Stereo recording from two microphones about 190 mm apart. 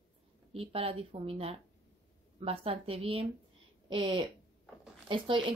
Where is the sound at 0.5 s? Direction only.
30° right (ahead or behind).